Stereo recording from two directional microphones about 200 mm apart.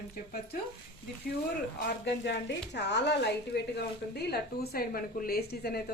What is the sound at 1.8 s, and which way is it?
A woman's voice, 60° left (ahead or behind).